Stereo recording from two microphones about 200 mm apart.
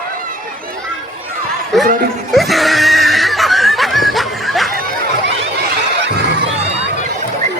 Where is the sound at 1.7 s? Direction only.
Centre (ahead or behind).